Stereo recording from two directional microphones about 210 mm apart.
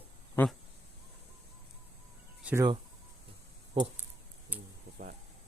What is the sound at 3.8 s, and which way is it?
Speech, 25° right (ahead or behind).